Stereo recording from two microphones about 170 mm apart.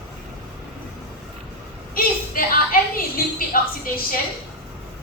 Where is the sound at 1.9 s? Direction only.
60° left (ahead or behind).